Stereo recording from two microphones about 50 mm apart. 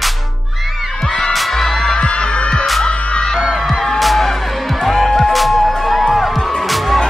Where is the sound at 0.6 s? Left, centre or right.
Centre.